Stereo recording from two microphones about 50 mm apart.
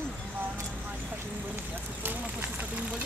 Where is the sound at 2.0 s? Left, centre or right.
Right.